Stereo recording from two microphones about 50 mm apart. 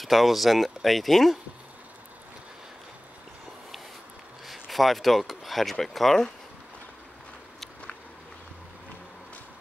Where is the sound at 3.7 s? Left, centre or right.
Centre.